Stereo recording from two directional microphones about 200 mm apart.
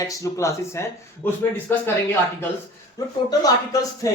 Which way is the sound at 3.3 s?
20° left (ahead or behind).